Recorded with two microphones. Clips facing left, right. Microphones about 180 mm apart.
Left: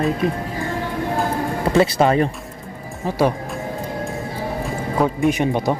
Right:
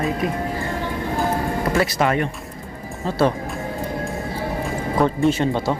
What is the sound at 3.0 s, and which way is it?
Speech, 15° left (ahead or behind).